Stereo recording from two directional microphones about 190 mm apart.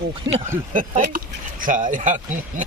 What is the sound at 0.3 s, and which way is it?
Speech, 20° right (ahead or behind).